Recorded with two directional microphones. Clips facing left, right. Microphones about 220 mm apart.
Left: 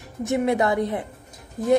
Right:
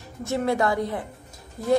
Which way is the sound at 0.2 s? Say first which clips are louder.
Left 2 dB; 20° left (ahead or behind).